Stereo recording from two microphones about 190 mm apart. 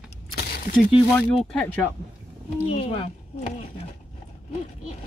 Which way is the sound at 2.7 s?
30° left (ahead or behind).